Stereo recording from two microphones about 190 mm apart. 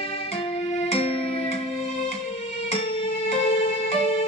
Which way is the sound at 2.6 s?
35° left (ahead or behind).